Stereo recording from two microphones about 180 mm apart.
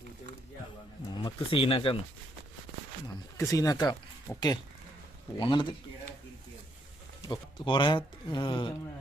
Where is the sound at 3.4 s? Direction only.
20° left (ahead or behind).